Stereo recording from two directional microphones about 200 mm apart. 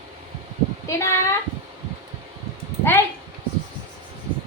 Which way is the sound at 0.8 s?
15° left (ahead or behind).